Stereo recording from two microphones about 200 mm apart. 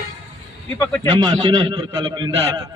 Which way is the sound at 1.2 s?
20° right (ahead or behind).